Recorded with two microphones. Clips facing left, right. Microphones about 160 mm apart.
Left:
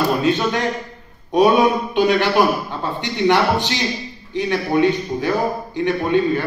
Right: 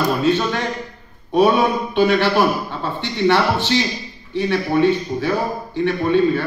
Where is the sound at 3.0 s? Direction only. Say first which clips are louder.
Even; 15° left (ahead or behind).